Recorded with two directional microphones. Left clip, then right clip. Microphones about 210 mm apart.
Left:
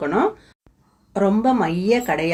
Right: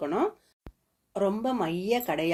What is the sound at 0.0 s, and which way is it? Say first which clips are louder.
A woman's voice: left 8 dB; 40° right (ahead or behind).